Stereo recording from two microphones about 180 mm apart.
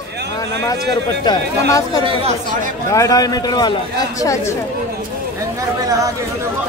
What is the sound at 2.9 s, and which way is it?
Speech, 20° left (ahead or behind).